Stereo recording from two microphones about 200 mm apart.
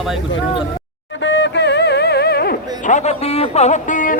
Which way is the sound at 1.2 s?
65° left (ahead or behind).